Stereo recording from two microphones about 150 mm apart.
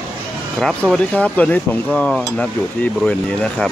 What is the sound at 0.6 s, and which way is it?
Speech, centre (ahead or behind).